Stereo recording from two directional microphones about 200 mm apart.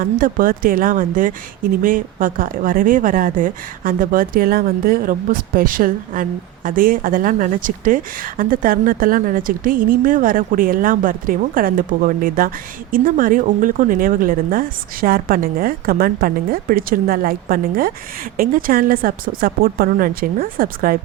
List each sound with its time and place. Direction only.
0.0 s a woman's voice: 45° right (ahead or behind)